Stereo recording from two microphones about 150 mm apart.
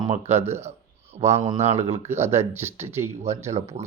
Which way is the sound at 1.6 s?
45° right (ahead or behind).